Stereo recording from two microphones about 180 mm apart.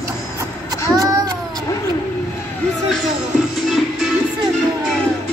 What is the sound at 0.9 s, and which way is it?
Speech, 20° right (ahead or behind).